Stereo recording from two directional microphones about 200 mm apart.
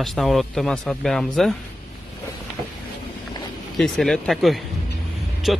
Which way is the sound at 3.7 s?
Centre (ahead or behind).